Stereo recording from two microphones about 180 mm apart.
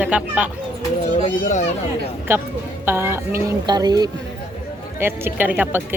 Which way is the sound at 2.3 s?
15° right (ahead or behind).